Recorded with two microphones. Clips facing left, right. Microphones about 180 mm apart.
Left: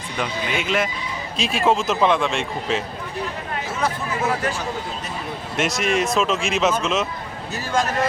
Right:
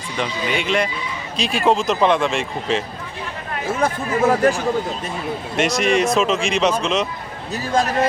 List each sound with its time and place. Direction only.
0.2 s speech: centre (ahead or behind)
3.7 s speech: 50° right (ahead or behind)
5.5 s speech: centre (ahead or behind)